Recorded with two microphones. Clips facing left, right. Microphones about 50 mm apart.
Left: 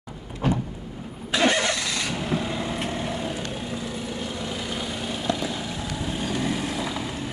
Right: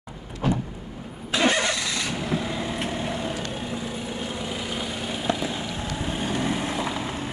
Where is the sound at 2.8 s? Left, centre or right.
Centre.